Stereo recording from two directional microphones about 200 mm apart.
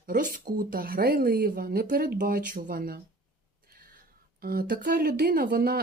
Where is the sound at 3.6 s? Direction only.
45° right (ahead or behind).